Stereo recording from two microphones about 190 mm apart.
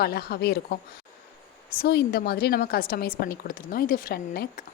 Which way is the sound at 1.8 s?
55° left (ahead or behind).